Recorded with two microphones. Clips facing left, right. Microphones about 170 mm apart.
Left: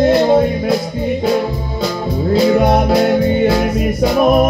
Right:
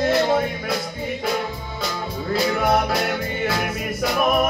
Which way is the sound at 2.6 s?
25° left (ahead or behind).